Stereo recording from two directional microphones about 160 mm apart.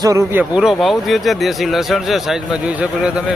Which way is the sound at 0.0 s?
20° right (ahead or behind).